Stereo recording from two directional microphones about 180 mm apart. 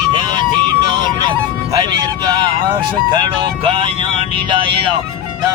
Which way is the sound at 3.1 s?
30° right (ahead or behind).